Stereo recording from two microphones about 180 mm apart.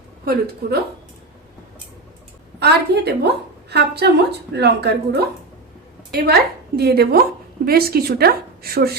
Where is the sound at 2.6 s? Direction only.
65° right (ahead or behind).